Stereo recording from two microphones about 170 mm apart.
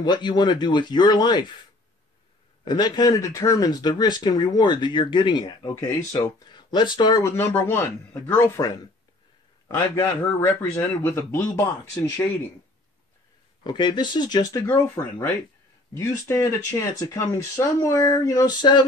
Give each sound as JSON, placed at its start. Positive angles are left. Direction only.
{"t": 0.0, "sound": "speech", "side_deg": 25}
{"t": 2.6, "sound": "speech", "side_deg": 25}
{"t": 9.7, "sound": "a man's voice", "side_deg": 15}
{"t": 13.7, "sound": "speech", "side_deg": 25}